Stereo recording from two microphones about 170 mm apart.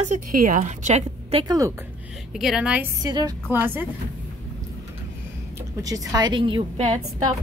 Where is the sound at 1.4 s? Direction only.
20° right (ahead or behind).